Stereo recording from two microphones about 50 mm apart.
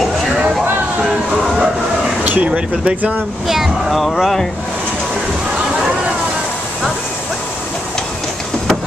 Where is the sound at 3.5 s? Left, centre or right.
Centre.